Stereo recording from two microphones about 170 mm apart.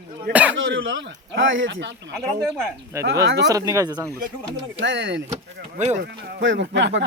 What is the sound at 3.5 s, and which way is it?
Speech, 20° right (ahead or behind).